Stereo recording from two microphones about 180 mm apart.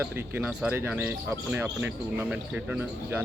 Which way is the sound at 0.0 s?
10° right (ahead or behind).